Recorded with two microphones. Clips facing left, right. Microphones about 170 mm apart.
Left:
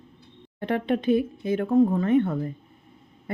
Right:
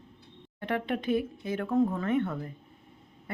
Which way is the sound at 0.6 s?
30° left (ahead or behind).